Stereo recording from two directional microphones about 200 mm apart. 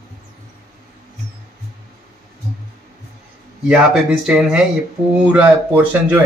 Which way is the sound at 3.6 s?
5° right (ahead or behind).